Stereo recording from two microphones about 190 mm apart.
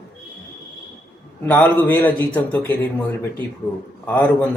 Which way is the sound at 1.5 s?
10° left (ahead or behind).